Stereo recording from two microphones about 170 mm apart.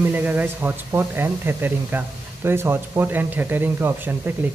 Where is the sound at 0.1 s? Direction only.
10° right (ahead or behind).